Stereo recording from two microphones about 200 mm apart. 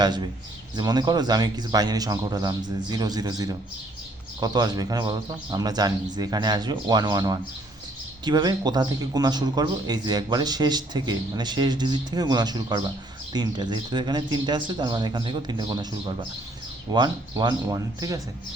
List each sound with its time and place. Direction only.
0.0 s a man's voice: 20° right (ahead or behind)